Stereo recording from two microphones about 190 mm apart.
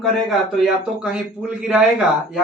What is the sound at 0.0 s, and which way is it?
Speech, centre (ahead or behind).